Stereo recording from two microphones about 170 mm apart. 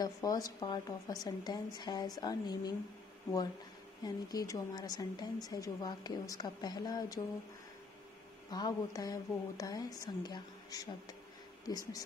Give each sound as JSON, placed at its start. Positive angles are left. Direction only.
{"t": 0.0, "sound": "speech", "side_deg": 20}
{"t": 4.0, "sound": "speech", "side_deg": 20}
{"t": 8.5, "sound": "speech", "side_deg": 25}